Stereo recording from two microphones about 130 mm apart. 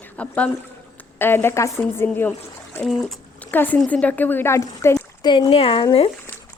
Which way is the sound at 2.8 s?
Centre (ahead or behind).